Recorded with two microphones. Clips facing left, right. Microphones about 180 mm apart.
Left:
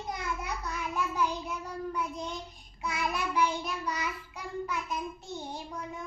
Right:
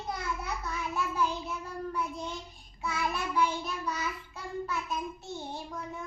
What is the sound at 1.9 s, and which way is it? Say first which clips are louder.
Child singing: even; 15° left (ahead or behind).